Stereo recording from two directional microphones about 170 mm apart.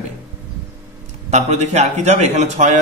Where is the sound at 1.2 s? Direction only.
40° right (ahead or behind).